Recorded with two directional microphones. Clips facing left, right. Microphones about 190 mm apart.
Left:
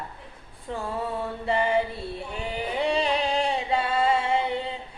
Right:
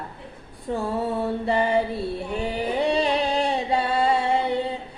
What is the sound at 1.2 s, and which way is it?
Mantra, 35° right (ahead or behind).